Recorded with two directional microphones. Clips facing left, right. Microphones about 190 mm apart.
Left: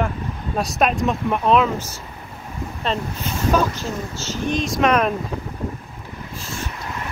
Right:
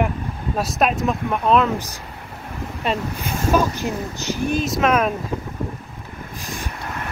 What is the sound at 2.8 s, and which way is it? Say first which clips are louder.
Speech: right 1 dB; 10° right (ahead or behind).